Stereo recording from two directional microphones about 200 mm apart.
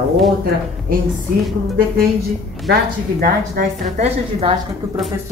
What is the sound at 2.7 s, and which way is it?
Speech, 50° right (ahead or behind).